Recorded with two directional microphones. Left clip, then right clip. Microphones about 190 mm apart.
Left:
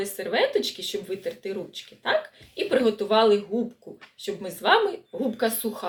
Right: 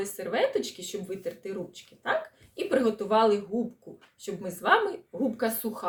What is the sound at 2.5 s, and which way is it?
Speech, 15° right (ahead or behind).